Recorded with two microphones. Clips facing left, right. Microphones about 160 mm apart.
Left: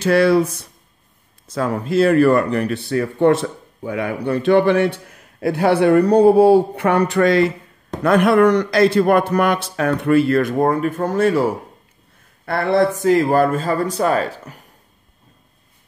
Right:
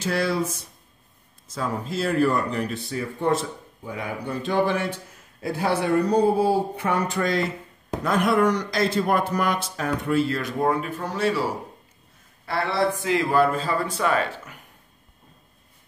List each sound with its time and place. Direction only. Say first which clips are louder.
0.0 s speech: left 10 dB; 65° left (ahead or behind); by 11.4 s 50° left (ahead or behind)
12.4 s speech: left 7 dB; 50° left (ahead or behind)